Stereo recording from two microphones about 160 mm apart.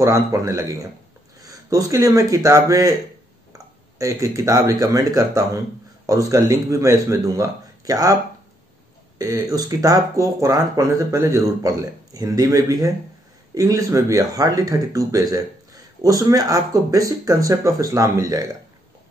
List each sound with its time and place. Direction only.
0.0 s speech: 20° right (ahead or behind)
4.0 s speech: 20° right (ahead or behind)
9.2 s speech: 20° right (ahead or behind)